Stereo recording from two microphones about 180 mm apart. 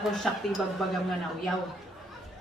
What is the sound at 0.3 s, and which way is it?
Speech, centre (ahead or behind).